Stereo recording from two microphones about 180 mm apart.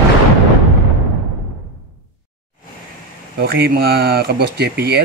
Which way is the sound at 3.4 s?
60° right (ahead or behind).